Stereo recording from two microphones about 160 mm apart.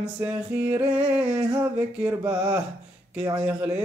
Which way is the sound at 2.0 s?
15° right (ahead or behind).